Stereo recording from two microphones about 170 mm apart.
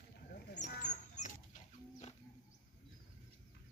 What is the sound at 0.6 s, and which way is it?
Rodents, 45° left (ahead or behind).